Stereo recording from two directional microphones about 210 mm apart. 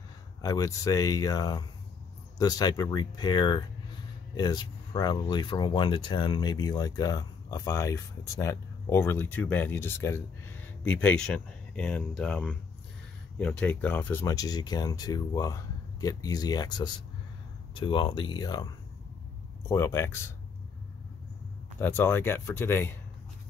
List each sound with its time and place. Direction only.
0.4 s speech: 15° left (ahead or behind)
19.7 s speech: 10° left (ahead or behind)
21.7 s speech: 10° left (ahead or behind)